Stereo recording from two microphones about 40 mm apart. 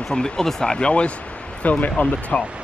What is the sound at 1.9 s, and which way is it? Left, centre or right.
Speech, left.